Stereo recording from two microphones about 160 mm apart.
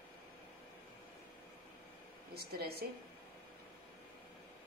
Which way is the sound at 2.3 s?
80° right.